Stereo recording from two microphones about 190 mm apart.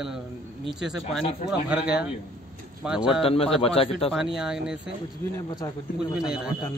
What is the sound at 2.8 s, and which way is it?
Speech, 5° right (ahead or behind).